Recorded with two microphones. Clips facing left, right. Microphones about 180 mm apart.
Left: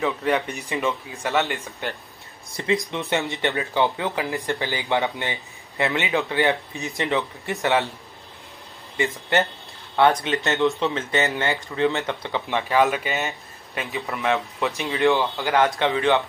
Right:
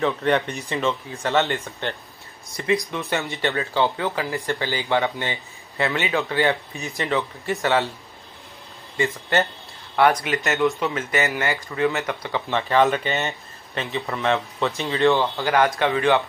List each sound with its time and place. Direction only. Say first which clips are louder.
0.0 s speech: right 2 dB; 5° left (ahead or behind)
2.5 s speech: right 1 dB; 25° left (ahead or behind)
8.9 s speech: even; 20° left (ahead or behind)
14.1 s speech: even; 15° left (ahead or behind)